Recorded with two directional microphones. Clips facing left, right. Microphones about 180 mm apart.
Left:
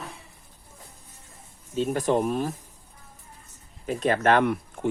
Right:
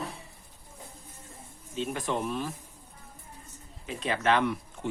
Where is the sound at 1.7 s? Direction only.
40° left (ahead or behind).